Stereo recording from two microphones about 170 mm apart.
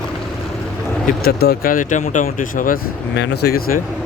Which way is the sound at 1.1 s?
60° left (ahead or behind).